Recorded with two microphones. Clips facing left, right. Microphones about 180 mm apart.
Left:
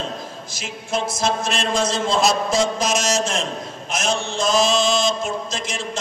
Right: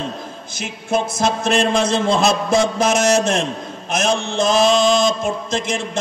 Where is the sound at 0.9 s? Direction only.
60° right (ahead or behind).